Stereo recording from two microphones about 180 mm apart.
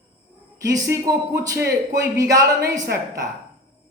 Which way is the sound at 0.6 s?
20° right (ahead or behind).